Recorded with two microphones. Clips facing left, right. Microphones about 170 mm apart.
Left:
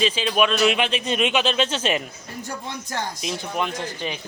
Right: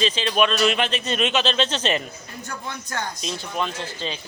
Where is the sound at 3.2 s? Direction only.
15° left (ahead or behind).